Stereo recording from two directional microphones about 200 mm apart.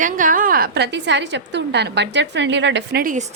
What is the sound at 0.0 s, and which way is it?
A woman's voice, 40° right (ahead or behind).